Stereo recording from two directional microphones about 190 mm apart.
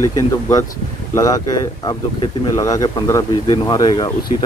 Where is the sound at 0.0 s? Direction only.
15° left (ahead or behind).